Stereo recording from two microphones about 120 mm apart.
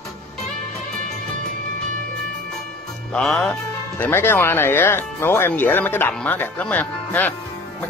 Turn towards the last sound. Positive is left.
turn(degrees=15)  # may be behind; listen again after turning